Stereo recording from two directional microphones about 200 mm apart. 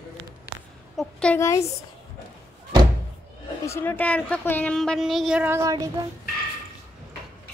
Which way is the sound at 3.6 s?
10° left (ahead or behind).